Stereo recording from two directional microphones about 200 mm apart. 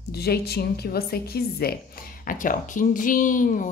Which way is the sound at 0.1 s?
50° left (ahead or behind).